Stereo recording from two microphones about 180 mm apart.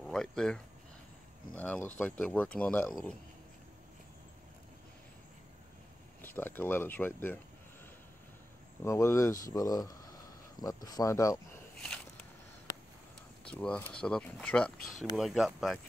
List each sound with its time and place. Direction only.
0.0 s a sound: 5° left (ahead or behind)
1.5 s speech: 5° left (ahead or behind)
6.2 s speech: 10° left (ahead or behind)
8.8 s speech: 15° left (ahead or behind)
13.5 s speech: 5° left (ahead or behind)